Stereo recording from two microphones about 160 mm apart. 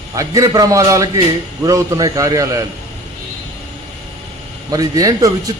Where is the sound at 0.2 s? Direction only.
20° right (ahead or behind).